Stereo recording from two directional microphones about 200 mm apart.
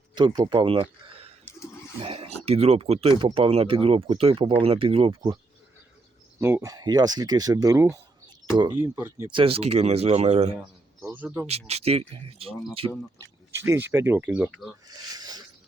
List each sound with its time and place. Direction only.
0.1 s speech: 20° right (ahead or behind)
6.4 s speech: 15° right (ahead or behind)
9.3 s speech: 30° right (ahead or behind)
11.0 s speech: 10° right (ahead or behind)
11.4 s speech: 30° right (ahead or behind)
13.1 s speech: 15° right (ahead or behind)
14.8 s a sound: 20° right (ahead or behind)